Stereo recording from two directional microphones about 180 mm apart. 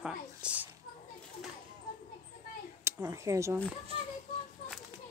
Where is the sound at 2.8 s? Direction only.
15° right (ahead or behind).